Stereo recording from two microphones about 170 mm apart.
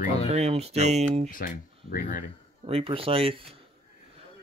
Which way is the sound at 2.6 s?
35° right (ahead or behind).